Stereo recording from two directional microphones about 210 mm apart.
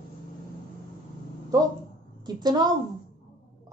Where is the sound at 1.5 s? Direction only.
15° right (ahead or behind).